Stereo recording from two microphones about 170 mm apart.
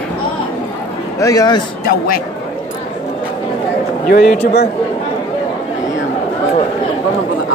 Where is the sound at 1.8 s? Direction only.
60° left (ahead or behind).